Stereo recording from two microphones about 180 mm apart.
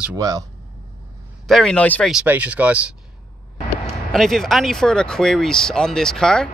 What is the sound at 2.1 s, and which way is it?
Speech, 5° right (ahead or behind).